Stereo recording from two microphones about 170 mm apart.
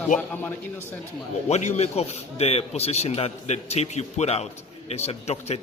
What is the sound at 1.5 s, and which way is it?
A man's voice, 40° left (ahead or behind).